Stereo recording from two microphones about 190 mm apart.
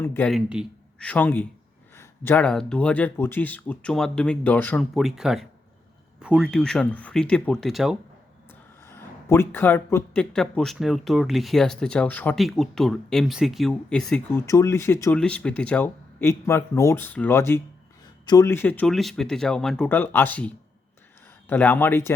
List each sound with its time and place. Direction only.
0.0 s speech: 10° left (ahead or behind)
0.3 s speech: 5° right (ahead or behind)
8.9 s speech: 15° left (ahead or behind)
14.4 s speech: 15° left (ahead or behind)